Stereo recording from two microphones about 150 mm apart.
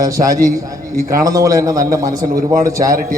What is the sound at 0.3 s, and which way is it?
Speech, 70° right (ahead or behind).